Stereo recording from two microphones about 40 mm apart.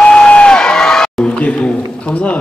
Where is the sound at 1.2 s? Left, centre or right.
Left.